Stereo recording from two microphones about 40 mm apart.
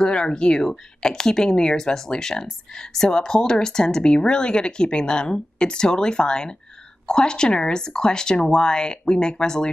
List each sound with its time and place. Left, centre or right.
0.0 s speech: centre